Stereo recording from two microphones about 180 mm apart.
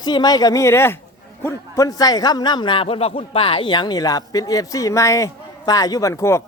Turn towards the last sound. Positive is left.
turn(degrees=15)  # may be behind; listen again after turning